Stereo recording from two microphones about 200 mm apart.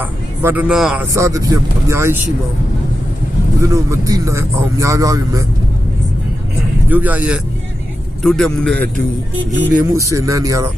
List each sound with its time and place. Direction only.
0.0 s speech: 10° right (ahead or behind)
1.1 s a man's voice: 15° right (ahead or behind)
3.6 s a man's voice: 15° right (ahead or behind)
6.8 s a man's voice: 10° right (ahead or behind)
9.9 s a man's voice: 15° right (ahead or behind)